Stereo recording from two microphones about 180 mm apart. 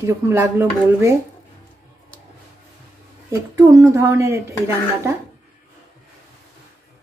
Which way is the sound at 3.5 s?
20° right (ahead or behind).